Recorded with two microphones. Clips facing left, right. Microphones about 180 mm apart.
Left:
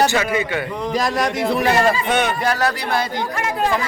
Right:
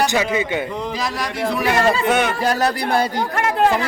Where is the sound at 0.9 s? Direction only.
50° left (ahead or behind).